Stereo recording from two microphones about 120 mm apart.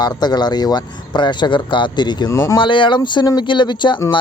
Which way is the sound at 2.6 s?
45° left (ahead or behind).